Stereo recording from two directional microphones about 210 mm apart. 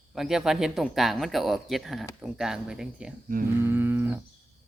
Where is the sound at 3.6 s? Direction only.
10° right (ahead or behind).